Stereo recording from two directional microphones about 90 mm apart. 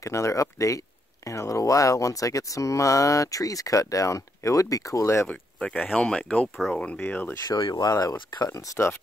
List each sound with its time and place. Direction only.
0.0 s speech: 35° left (ahead or behind)
5.3 s speech: 15° left (ahead or behind)
7.7 s speech: 45° left (ahead or behind)